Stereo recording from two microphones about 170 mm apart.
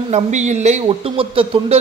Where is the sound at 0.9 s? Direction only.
30° right (ahead or behind).